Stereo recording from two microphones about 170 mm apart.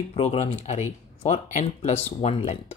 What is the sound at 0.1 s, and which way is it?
Speech, 35° left (ahead or behind).